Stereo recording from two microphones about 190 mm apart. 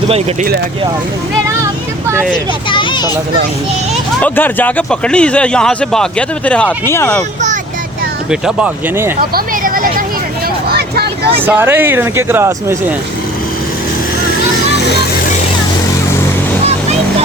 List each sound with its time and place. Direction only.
2.6 s a sound: 25° left (ahead or behind)
4.2 s speech: 10° left (ahead or behind)
8.3 s speech: 5° right (ahead or behind)
9.3 s a sound: 50° right (ahead or behind)
10.7 s vehicle: 55° right (ahead or behind)
11.3 s speech: 10° right (ahead or behind)